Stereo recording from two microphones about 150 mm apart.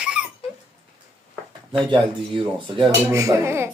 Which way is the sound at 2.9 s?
20° right (ahead or behind).